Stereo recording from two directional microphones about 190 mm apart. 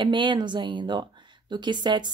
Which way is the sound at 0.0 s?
25° right (ahead or behind).